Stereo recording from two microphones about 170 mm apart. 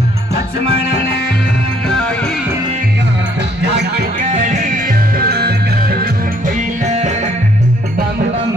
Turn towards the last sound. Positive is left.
turn(degrees=-40)  # may be behind; listen again after turning